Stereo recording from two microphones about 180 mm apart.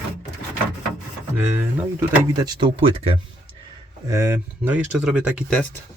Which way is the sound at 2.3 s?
20° right (ahead or behind).